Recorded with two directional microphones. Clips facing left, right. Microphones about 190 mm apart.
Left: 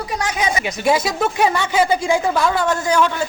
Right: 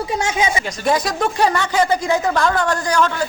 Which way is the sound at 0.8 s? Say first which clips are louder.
Left 1 dB; 5° left (ahead or behind).